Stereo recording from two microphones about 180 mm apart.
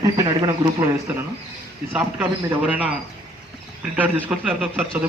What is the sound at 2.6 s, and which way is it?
Speech, 10° right (ahead or behind).